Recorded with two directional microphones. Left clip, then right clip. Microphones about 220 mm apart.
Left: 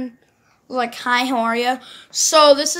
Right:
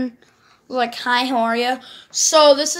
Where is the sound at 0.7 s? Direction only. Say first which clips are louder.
Even; 10° left (ahead or behind).